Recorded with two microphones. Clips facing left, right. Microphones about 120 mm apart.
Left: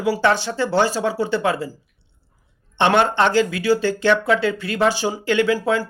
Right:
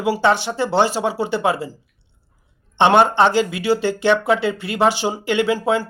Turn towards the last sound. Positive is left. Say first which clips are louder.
# even
turn(degrees=-20)  # may be behind; listen again after turning